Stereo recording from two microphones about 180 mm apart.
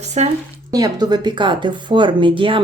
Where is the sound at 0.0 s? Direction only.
40° right (ahead or behind).